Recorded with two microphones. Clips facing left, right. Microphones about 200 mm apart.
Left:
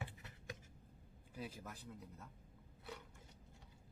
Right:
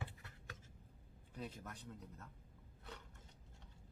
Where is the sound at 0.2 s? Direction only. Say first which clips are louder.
Left 5 dB; 20° left (ahead or behind).